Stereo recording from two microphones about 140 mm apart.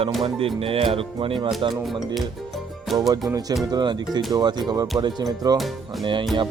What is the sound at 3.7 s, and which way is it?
Speech, 30° right (ahead or behind).